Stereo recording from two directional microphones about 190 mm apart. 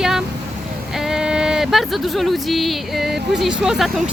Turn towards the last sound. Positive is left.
turn(degrees=0)  # may be behind; listen again after turning